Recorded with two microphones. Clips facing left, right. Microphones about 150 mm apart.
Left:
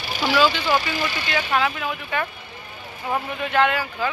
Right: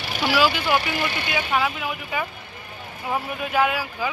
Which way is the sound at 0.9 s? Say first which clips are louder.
Even; 60° right (ahead or behind).